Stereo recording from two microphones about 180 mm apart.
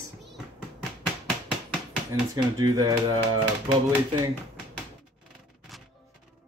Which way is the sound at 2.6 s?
20° right (ahead or behind).